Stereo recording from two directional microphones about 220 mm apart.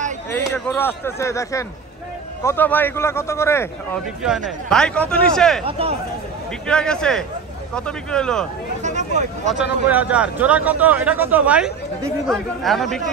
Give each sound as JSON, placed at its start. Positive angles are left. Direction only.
{"t": 0.3, "sound": "speech", "side_deg": 10}
{"t": 4.2, "sound": "speech", "side_deg": 0}
{"t": 5.7, "sound": "speech", "side_deg": -25}
{"t": 6.7, "sound": "speech", "side_deg": 5}
{"t": 8.8, "sound": "a sound", "side_deg": -30}
{"t": 9.5, "sound": "speech", "side_deg": -5}